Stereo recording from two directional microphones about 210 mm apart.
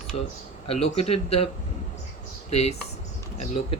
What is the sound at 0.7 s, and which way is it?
Speech, 30° left (ahead or behind).